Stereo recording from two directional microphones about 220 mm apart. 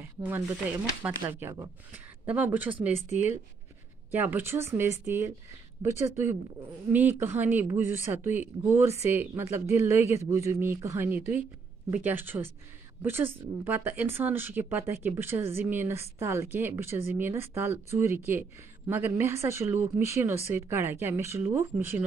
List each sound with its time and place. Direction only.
0.2 s speech: 5° right (ahead or behind)
3.0 s speech: 30° left (ahead or behind)
4.1 s speech: 10° right (ahead or behind)